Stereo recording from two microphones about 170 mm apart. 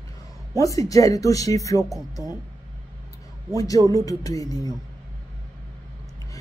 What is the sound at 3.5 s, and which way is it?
Speech, 20° left (ahead or behind).